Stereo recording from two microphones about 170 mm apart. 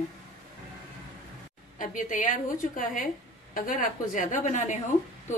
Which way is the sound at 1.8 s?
50° left (ahead or behind).